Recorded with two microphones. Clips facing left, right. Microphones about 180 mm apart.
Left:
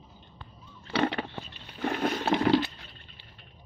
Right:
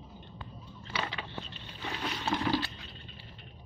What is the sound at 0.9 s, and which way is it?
Vehicle, 65° left (ahead or behind).